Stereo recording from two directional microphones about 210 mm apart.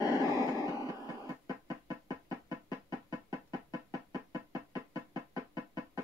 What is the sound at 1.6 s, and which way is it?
Knock, 15° right (ahead or behind).